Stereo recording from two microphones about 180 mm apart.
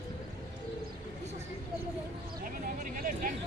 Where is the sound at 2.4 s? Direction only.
50° right (ahead or behind).